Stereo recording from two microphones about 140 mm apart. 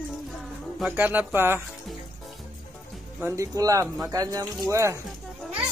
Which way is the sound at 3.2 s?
20° right (ahead or behind).